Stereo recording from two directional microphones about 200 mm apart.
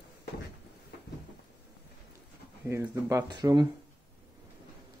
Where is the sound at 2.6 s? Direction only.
15° right (ahead or behind).